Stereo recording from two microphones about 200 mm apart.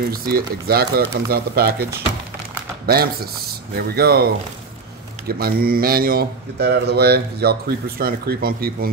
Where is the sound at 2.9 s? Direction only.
50° right (ahead or behind).